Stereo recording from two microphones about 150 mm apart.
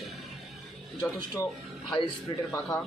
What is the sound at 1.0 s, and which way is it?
Speech, 25° left (ahead or behind).